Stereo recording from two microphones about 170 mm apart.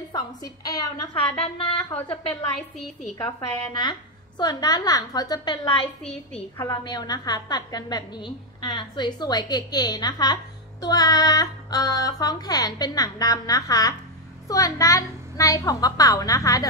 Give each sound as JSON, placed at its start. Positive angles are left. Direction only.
{"t": 0.1, "sound": "a woman's voice", "side_deg": 20}
{"t": 3.2, "sound": "a woman's voice", "side_deg": 25}